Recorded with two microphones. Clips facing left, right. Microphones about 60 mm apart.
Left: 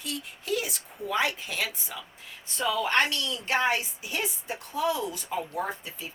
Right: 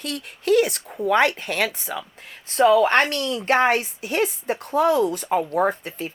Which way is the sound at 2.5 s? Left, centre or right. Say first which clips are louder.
Right 11 dB; right.